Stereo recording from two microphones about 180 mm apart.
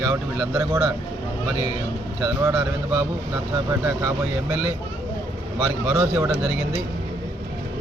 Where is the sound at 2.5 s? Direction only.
10° right (ahead or behind).